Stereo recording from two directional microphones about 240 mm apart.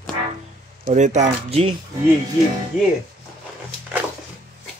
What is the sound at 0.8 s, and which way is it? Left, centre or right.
Speech, right.